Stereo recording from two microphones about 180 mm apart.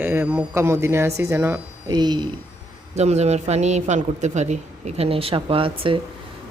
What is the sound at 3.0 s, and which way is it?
A woman's voice, 40° right (ahead or behind).